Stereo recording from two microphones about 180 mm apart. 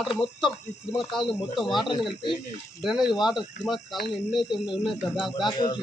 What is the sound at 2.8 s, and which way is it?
Speech, centre (ahead or behind).